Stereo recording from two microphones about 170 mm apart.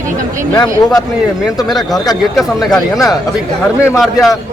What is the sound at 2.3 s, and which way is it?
Speech, centre (ahead or behind).